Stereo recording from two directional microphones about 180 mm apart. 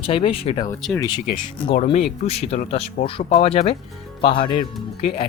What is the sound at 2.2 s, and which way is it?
Speech, 35° left (ahead or behind).